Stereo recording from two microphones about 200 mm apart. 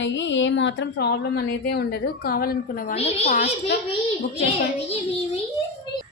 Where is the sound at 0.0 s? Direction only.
65° left (ahead or behind); by 2.9 s 45° left (ahead or behind).